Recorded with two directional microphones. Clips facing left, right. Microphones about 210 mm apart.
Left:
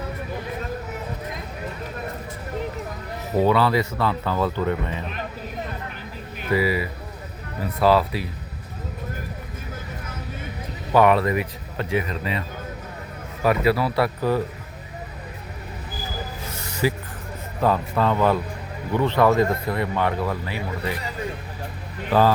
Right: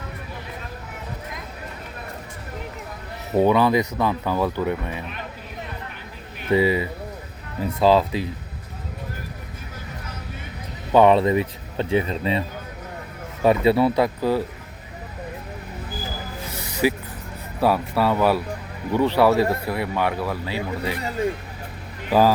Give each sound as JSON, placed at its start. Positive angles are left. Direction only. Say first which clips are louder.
{"t": 3.3, "sound": "speech", "louder": "right 2 dB", "side_deg": -20}
{"t": 6.5, "sound": "speech", "louder": "right 3 dB", "side_deg": -25}
{"t": 10.9, "sound": "speech", "louder": "right 2 dB", "side_deg": -25}
{"t": 16.5, "sound": "a sound", "louder": "right 3 dB", "side_deg": -15}
{"t": 17.6, "sound": "speech", "louder": "right 1 dB", "side_deg": -10}
{"t": 22.1, "sound": "speech", "louder": "right 1 dB", "side_deg": -10}